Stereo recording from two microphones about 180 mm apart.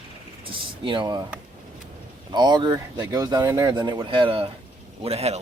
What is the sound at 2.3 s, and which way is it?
A man's voice, 25° right (ahead or behind).